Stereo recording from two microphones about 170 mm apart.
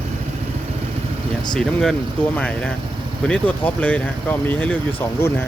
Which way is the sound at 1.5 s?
5° left (ahead or behind).